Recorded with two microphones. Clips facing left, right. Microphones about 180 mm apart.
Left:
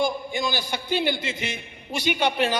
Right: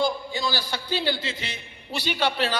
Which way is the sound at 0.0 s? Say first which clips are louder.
Left 1 dB; 20° left (ahead or behind).